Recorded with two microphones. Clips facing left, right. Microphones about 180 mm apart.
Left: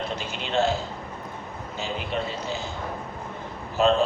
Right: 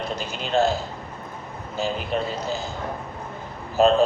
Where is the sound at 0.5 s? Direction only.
35° right (ahead or behind).